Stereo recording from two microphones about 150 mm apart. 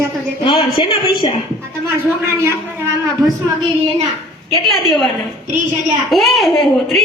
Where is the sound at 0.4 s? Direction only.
35° left (ahead or behind).